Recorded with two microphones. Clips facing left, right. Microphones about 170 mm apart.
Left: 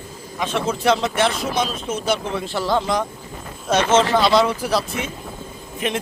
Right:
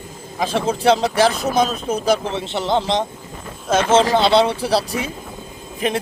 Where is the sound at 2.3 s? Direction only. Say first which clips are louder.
Right 1 dB; 25° right (ahead or behind).